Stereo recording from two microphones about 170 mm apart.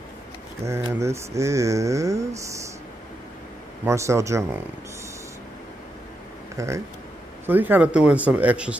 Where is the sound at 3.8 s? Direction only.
15° right (ahead or behind).